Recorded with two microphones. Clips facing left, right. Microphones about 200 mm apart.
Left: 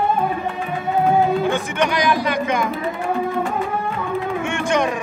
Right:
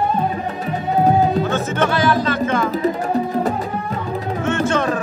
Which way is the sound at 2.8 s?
40° right (ahead or behind).